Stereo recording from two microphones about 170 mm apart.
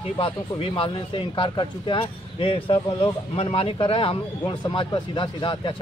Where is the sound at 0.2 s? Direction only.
30° left (ahead or behind).